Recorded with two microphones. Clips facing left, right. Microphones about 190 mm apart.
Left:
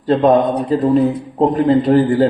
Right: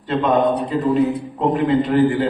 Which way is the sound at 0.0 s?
35° left (ahead or behind).